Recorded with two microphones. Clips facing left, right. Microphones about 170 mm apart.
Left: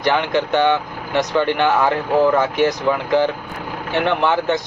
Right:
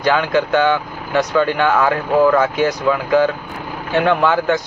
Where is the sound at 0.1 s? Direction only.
20° left (ahead or behind).